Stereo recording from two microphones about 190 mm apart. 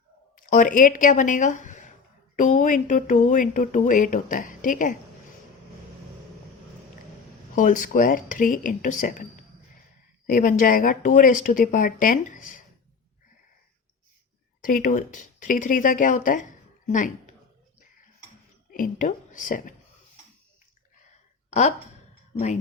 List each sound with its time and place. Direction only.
0.3 s speech: 45° left (ahead or behind)
7.5 s speech: 45° left (ahead or behind)
14.6 s speech: 45° left (ahead or behind)
18.7 s a woman's voice: 45° left (ahead or behind)